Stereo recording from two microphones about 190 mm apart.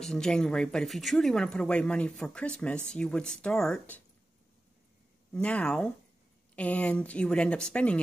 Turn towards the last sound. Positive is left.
turn(degrees=5)  # may be behind; listen again after turning